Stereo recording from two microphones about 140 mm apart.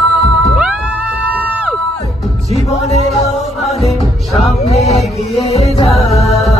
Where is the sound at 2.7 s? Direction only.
55° left (ahead or behind).